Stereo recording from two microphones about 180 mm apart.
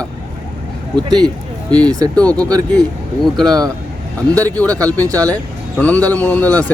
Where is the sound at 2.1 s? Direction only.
5° left (ahead or behind).